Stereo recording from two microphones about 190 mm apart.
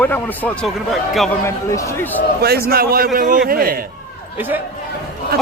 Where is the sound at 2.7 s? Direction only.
55° right (ahead or behind).